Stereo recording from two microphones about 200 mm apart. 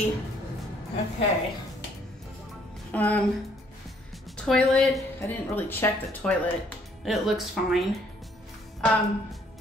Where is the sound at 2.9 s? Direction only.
10° left (ahead or behind).